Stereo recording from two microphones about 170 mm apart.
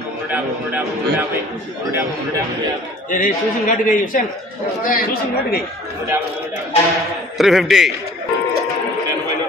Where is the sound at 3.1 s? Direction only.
50° left (ahead or behind).